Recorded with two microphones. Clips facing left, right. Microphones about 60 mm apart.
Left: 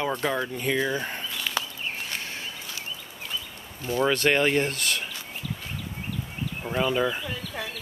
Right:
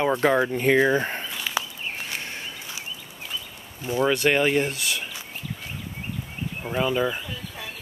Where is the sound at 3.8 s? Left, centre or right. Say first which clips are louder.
Right 1 dB; centre.